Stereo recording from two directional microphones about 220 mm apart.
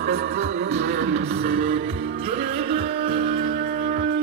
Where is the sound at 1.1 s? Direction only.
30° right (ahead or behind).